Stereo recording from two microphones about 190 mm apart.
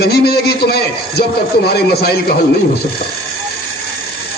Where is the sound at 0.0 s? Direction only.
55° left (ahead or behind).